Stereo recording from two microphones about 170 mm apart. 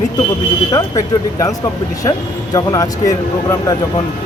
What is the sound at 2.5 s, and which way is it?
Speech, 20° left (ahead or behind).